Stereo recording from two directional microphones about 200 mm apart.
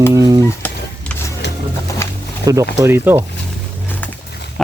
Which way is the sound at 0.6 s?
10° left (ahead or behind).